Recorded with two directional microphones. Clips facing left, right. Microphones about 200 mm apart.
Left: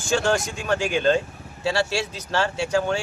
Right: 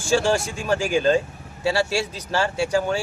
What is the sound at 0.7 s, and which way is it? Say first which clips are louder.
Speech: right 1 dB; 5° right (ahead or behind).